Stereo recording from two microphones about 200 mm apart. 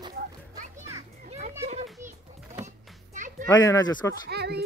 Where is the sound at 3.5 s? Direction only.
20° left (ahead or behind).